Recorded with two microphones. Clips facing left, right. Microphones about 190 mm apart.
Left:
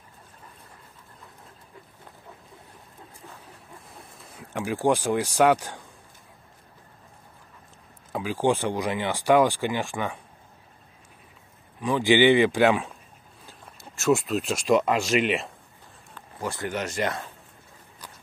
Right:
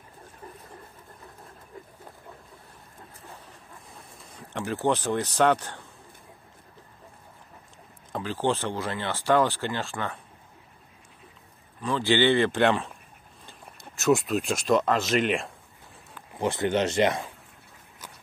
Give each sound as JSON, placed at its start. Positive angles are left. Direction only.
{"t": 3.9, "sound": "speech", "side_deg": 5}
{"t": 8.1, "sound": "speech", "side_deg": 10}
{"t": 11.8, "sound": "speech", "side_deg": 15}
{"t": 13.5, "sound": "speech", "side_deg": 0}
{"t": 16.3, "sound": "speech", "side_deg": -25}